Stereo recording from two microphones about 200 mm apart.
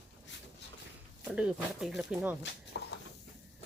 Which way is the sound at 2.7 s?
60° left (ahead or behind).